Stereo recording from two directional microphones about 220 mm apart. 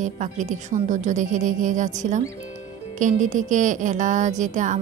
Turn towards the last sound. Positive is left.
turn(degrees=-35)  # may be behind; listen again after turning